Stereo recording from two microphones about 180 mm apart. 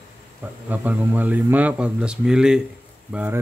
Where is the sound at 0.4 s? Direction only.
10° right (ahead or behind).